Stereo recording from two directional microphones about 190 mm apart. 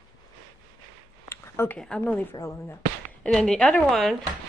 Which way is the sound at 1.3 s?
10° left (ahead or behind).